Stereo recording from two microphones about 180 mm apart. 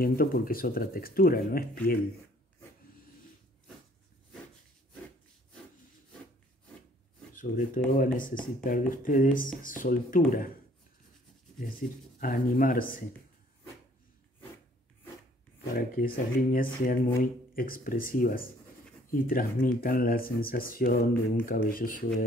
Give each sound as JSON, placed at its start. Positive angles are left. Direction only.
{"t": 0.0, "sound": "speech", "side_deg": 55}
{"t": 7.3, "sound": "speech", "side_deg": 50}
{"t": 12.2, "sound": "speech", "side_deg": 50}
{"t": 15.7, "sound": "speech", "side_deg": 50}